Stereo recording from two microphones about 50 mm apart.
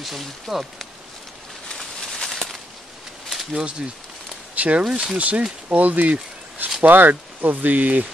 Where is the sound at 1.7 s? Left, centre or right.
Centre.